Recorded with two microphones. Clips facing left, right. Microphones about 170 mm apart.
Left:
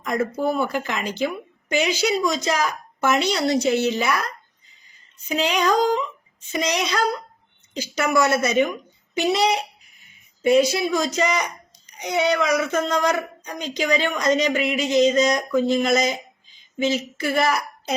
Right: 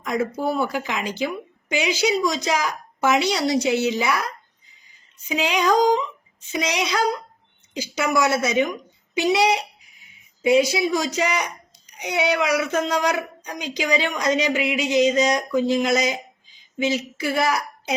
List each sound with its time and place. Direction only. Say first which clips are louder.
0.3 s speech: left 1 dB; 10° right (ahead or behind)